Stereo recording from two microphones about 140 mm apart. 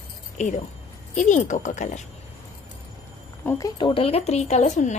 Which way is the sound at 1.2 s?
60° left (ahead or behind).